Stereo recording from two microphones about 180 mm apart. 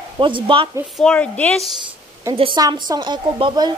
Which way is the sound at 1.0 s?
5° left (ahead or behind).